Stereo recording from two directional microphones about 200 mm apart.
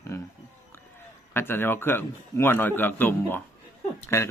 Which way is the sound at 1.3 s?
10° left (ahead or behind).